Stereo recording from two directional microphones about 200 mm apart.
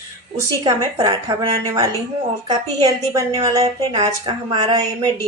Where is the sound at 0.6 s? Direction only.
20° right (ahead or behind).